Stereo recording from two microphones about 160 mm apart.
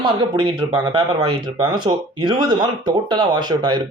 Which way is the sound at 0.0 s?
30° right (ahead or behind).